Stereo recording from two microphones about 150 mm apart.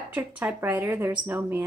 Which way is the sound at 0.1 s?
10° right (ahead or behind).